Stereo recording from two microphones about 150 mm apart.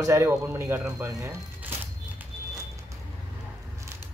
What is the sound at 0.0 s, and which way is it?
Speech, 20° right (ahead or behind).